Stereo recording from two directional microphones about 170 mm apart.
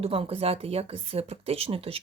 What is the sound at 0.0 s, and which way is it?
Speech, 35° right (ahead or behind).